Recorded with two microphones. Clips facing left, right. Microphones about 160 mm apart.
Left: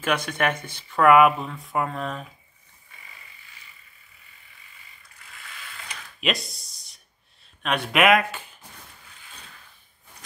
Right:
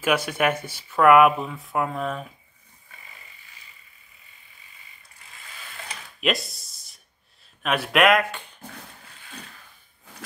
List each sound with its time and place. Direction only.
0.0 s speech: 10° right (ahead or behind)
6.2 s speech: centre (ahead or behind)